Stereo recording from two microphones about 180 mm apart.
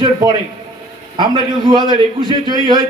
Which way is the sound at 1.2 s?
25° right (ahead or behind).